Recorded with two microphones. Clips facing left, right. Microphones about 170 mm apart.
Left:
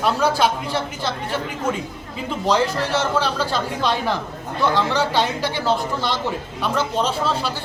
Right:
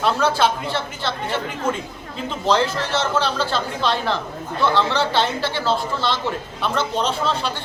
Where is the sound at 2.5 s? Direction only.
10° left (ahead or behind).